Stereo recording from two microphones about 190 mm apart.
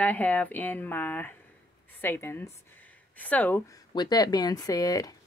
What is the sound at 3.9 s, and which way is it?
Speech, 20° left (ahead or behind).